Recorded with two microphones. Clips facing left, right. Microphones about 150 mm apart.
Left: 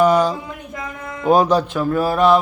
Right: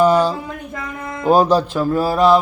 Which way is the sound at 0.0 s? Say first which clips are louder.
Right 1 dB; 30° right (ahead or behind).